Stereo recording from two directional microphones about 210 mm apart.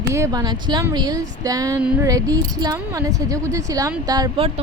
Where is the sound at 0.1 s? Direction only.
15° right (ahead or behind).